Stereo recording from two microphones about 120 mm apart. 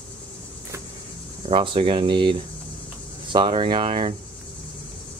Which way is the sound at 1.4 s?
45° right (ahead or behind).